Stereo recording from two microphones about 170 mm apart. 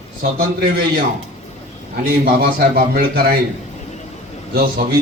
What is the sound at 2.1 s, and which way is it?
A man's voice, 60° right (ahead or behind).